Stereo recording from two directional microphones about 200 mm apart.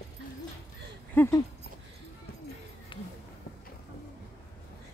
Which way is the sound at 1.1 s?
10° left (ahead or behind).